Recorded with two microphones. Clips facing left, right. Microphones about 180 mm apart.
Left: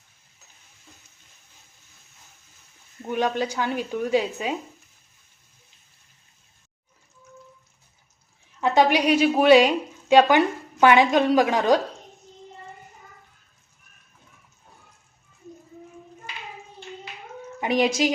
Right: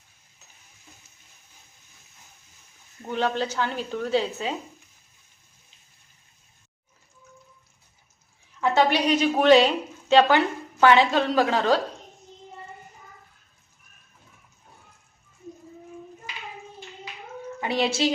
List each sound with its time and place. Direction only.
3.0 s a woman's voice: 15° left (ahead or behind)
8.6 s a woman's voice: 15° left (ahead or behind)
17.6 s speech: 15° left (ahead or behind)